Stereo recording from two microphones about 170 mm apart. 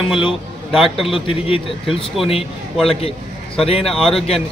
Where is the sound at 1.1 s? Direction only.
35° left (ahead or behind).